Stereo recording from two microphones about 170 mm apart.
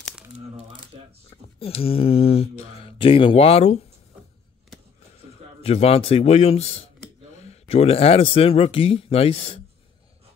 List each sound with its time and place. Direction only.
1.6 s speech: 35° left (ahead or behind)
5.6 s speech: 35° left (ahead or behind)